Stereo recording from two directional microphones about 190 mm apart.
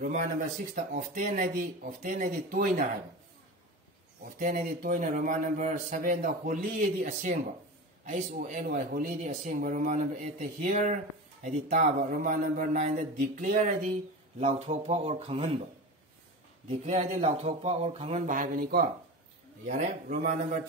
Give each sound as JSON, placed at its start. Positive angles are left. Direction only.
{"t": 0.0, "sound": "a man's voice", "side_deg": -45}
{"t": 4.4, "sound": "a man's voice", "side_deg": -45}
{"t": 16.6, "sound": "a man's voice", "side_deg": -35}